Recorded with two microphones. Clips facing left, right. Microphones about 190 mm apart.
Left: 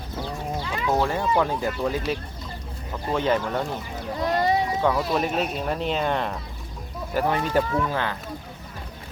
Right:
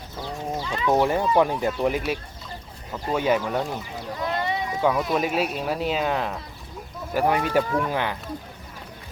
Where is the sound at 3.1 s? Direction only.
10° right (ahead or behind).